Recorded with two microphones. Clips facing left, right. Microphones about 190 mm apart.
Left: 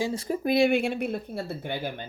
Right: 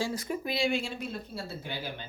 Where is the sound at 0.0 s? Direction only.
25° left (ahead or behind).